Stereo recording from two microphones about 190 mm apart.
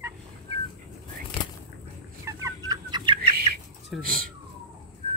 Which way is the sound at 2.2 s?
20° right (ahead or behind).